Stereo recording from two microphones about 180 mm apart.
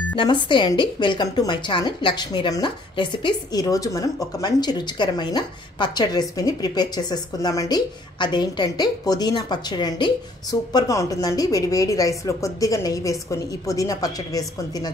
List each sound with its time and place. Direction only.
0.1 s a woman's voice: 25° left (ahead or behind)